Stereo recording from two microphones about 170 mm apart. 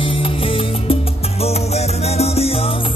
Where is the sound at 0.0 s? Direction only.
30° left (ahead or behind).